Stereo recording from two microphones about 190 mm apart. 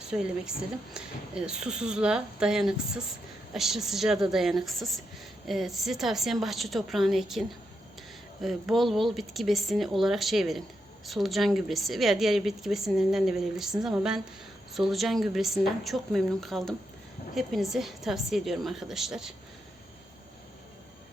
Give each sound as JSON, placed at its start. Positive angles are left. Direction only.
{"t": 0.0, "sound": "a woman's voice", "side_deg": -5}